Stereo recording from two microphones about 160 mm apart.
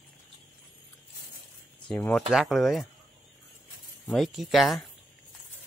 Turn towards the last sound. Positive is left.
turn(degrees=0)  # may be behind; listen again after turning